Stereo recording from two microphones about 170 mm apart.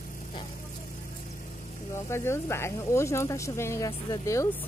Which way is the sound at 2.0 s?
15° left (ahead or behind).